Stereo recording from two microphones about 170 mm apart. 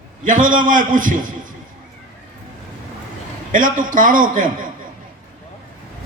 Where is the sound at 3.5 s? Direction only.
50° right (ahead or behind).